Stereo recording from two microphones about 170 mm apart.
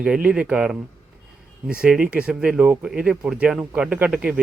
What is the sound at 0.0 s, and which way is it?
Speech, 5° right (ahead or behind).